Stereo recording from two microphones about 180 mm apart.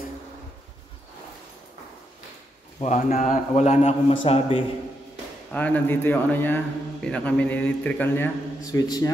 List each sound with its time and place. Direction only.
2.8 s a man's voice: 40° left (ahead or behind)
5.5 s speech: 10° left (ahead or behind)
8.7 s a man's voice: 20° left (ahead or behind)